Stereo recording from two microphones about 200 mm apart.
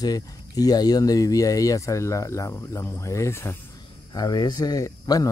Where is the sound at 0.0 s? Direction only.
20° left (ahead or behind).